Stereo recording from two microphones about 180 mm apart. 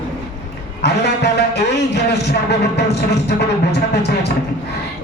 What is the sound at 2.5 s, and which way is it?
Music, 70° left (ahead or behind).